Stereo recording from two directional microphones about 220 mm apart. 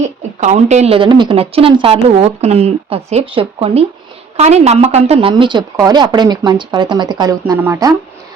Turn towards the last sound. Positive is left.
turn(degrees=-15)  # may be behind; listen again after turning